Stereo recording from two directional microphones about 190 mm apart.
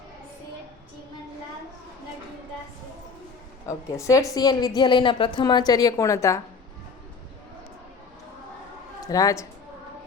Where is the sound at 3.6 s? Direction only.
15° left (ahead or behind).